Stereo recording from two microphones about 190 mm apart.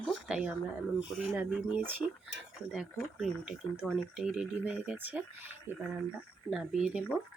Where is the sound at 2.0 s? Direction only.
20° left (ahead or behind).